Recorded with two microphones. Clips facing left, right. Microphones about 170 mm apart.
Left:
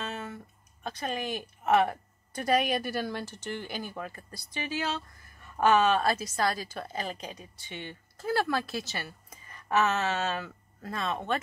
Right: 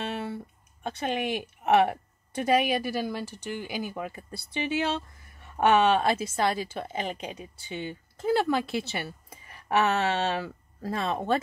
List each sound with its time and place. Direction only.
0.8 s a woman's voice: 25° right (ahead or behind)
2.3 s speech: 10° right (ahead or behind)
4.6 s a woman's voice: 25° right (ahead or behind)